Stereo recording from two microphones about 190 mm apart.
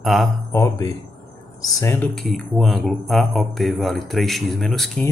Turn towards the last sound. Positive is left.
turn(degrees=0)  # may be behind; listen again after turning